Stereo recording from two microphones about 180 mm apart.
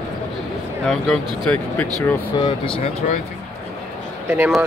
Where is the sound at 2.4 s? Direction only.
30° left (ahead or behind).